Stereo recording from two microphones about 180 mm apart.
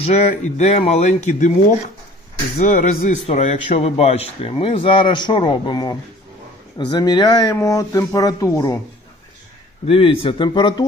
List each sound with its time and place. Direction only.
0.0 s a man's voice: 35° left (ahead or behind); by 8.7 s 20° left (ahead or behind)
9.8 s a man's voice: 30° left (ahead or behind)